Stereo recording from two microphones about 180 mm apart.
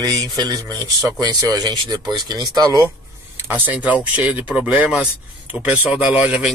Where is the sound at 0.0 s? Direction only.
20° right (ahead or behind).